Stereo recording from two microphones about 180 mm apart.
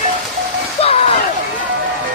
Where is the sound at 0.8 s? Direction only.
35° left (ahead or behind).